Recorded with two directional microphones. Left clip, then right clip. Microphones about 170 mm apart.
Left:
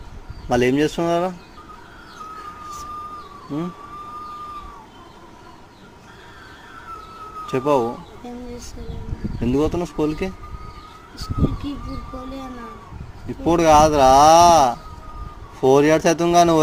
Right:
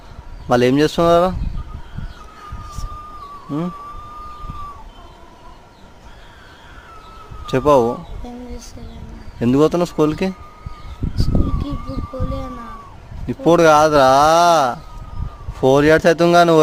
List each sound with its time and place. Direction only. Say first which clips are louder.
0.4 s speech: right 4 dB; 35° right (ahead or behind)
7.5 s speech: right 6 dB; 40° right (ahead or behind)
9.4 s speech: right 6 dB; 50° right (ahead or behind)
13.2 s speech: right 4 dB; 45° right (ahead or behind)